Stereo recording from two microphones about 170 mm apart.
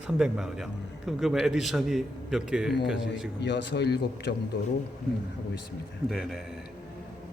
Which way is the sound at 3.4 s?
90° left.